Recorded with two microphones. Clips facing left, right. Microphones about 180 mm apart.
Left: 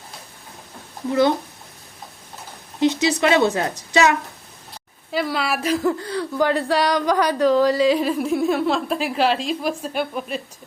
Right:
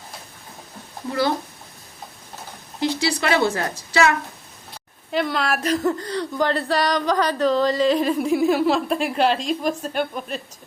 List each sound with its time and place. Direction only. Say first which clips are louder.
2.8 s a woman's voice: left 4 dB; 20° left (ahead or behind)
5.1 s a woman's voice: even; 5° left (ahead or behind)